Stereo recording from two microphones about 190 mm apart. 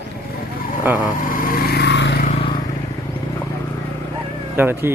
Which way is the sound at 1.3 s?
50° left (ahead or behind).